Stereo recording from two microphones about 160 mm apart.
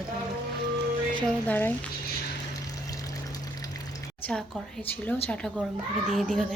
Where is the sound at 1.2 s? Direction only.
10° left (ahead or behind).